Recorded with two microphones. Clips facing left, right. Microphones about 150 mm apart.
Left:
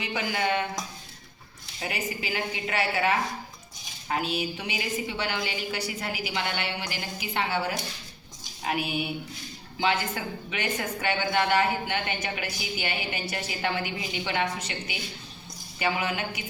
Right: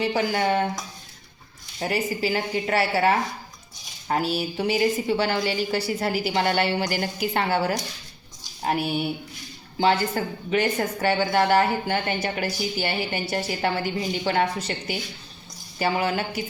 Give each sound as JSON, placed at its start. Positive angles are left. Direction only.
{"t": 0.0, "sound": "a woman's voice", "side_deg": -35}
{"t": 1.8, "sound": "a woman's voice", "side_deg": -35}